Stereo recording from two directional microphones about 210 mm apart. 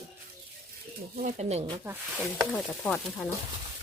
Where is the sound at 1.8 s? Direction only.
15° right (ahead or behind).